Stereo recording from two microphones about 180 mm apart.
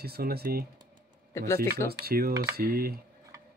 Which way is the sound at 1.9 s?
60° right (ahead or behind).